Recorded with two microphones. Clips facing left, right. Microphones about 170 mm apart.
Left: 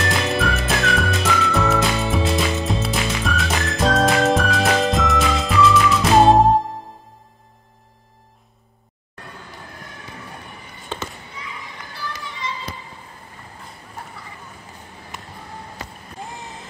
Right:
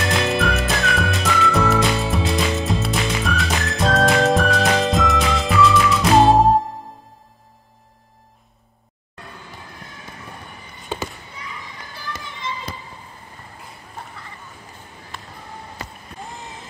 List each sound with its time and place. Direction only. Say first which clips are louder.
0.0 s music: right 1 dB; centre (ahead or behind)
15.1 s basketball bounce: even; 15° left (ahead or behind)